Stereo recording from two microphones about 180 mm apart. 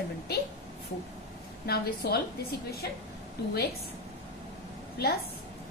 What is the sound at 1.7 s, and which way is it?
Speech, 60° left (ahead or behind).